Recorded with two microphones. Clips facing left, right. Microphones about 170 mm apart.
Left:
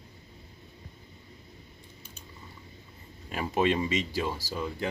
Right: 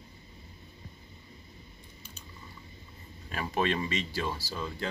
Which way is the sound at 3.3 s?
20° left (ahead or behind).